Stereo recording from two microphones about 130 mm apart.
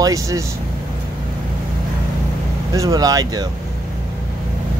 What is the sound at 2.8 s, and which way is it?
Speech, 30° right (ahead or behind).